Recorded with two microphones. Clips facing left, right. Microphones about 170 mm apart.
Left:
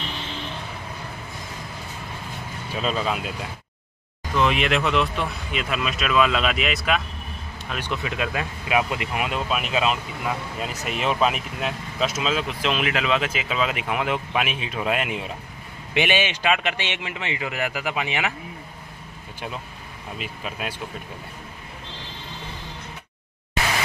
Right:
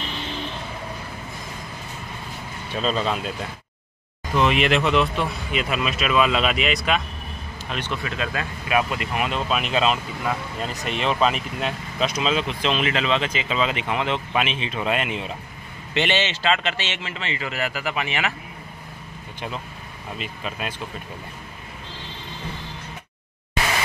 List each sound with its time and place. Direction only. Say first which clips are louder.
2.7 s speech: right 1 dB; 5° left (ahead or behind)
4.4 s speech: right 2 dB; centre (ahead or behind)
8.0 s speech: left 1 dB; 15° left (ahead or behind)
20.2 s speech: right 1 dB; 5° left (ahead or behind)